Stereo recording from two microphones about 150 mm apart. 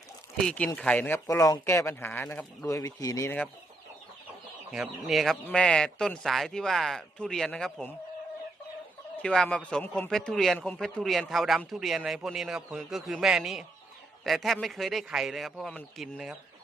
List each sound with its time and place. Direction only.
0.3 s speech: 5° left (ahead or behind)
2.6 s speech: 20° left (ahead or behind)
4.7 s a man's voice: 5° right (ahead or behind)
9.2 s a man's voice: 5° left (ahead or behind)